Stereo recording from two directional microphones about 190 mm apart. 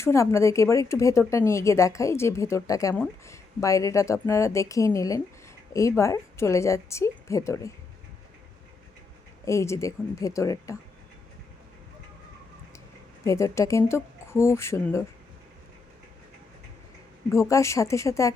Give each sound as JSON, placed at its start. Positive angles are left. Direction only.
{"t": 0.0, "sound": "a woman's voice", "side_deg": 15}
{"t": 9.4, "sound": "a woman's voice", "side_deg": 15}
{"t": 13.2, "sound": "a woman's voice", "side_deg": 15}
{"t": 17.3, "sound": "a woman's voice", "side_deg": 15}